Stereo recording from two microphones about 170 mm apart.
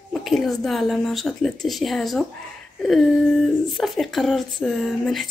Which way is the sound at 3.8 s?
Centre (ahead or behind).